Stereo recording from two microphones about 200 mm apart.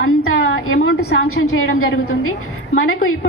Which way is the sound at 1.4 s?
85° left.